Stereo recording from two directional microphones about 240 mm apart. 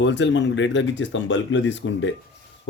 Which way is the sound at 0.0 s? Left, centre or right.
Left.